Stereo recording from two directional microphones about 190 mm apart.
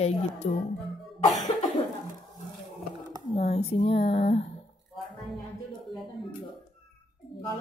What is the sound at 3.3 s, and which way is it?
Speech, 30° left (ahead or behind).